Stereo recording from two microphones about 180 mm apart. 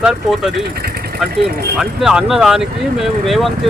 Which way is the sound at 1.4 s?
65° right (ahead or behind).